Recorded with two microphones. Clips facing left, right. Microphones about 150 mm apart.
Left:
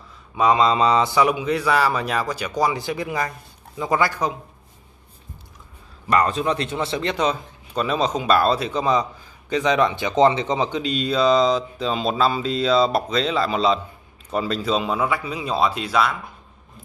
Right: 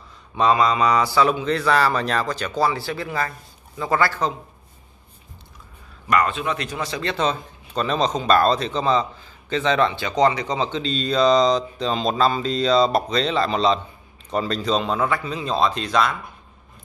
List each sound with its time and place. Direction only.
0.4 s a man's voice: 15° left (ahead or behind)
0.7 s a man's voice: 25° left (ahead or behind)
6.0 s a man's voice: 35° left (ahead or behind); by 16.2 s 5° left (ahead or behind)